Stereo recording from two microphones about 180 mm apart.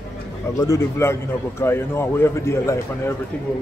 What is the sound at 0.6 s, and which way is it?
A man's voice, 15° left (ahead or behind).